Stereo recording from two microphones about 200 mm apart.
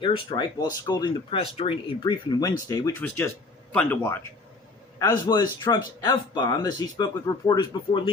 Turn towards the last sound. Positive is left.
turn(degrees=20)  # may be behind; listen again after turning